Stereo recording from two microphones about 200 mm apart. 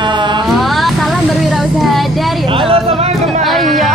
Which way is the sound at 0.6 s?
Centre (ahead or behind).